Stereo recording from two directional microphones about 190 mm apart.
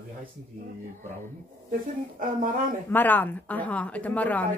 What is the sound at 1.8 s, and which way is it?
Speech, 45° right (ahead or behind).